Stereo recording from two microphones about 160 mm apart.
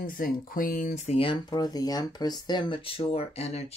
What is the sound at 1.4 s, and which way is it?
Speech, 25° left (ahead or behind).